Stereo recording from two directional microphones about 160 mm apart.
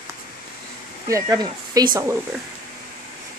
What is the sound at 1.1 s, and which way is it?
Speech, 20° right (ahead or behind).